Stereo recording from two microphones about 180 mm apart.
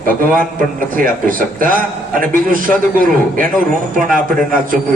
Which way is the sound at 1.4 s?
50° right (ahead or behind).